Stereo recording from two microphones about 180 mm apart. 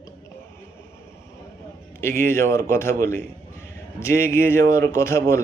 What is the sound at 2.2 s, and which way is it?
Speech, 15° left (ahead or behind).